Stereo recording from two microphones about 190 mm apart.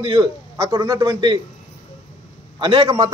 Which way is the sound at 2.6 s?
25° right (ahead or behind).